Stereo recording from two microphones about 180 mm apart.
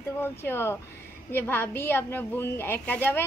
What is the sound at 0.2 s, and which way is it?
A woman's voice, 15° left (ahead or behind).